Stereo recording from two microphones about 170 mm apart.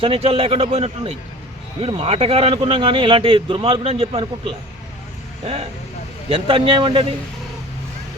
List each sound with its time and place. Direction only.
0.0 s speech: 35° right (ahead or behind)
6.2 s speech: 30° right (ahead or behind)